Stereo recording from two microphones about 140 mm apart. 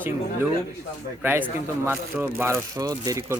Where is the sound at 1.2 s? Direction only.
15° right (ahead or behind).